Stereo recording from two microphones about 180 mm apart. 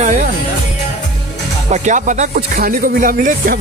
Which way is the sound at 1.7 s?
45° right (ahead or behind).